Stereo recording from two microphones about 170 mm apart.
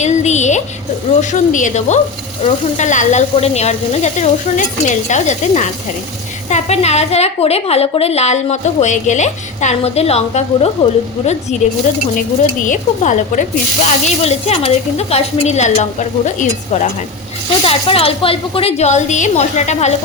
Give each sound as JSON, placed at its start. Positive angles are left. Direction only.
{"t": 0.0, "sound": "a sound", "side_deg": 40}
{"t": 1.2, "sound": "speech", "side_deg": 45}
{"t": 12.6, "sound": "speech", "side_deg": 45}
{"t": 17.6, "sound": "speech", "side_deg": 35}